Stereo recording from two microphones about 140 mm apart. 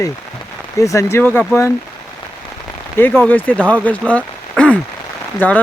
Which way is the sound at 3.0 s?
15° left (ahead or behind).